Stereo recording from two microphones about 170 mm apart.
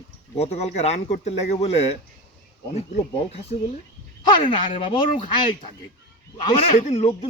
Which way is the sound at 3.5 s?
45° left (ahead or behind).